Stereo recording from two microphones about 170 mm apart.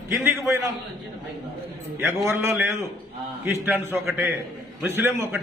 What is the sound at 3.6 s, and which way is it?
A man's voice, 15° right (ahead or behind).